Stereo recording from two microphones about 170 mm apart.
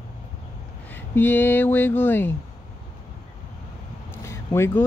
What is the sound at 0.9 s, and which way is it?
Speech, 10° left (ahead or behind).